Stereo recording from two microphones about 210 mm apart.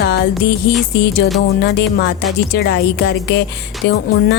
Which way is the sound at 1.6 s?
55° left (ahead or behind).